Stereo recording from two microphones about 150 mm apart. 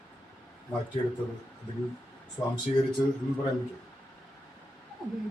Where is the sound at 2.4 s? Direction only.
15° left (ahead or behind).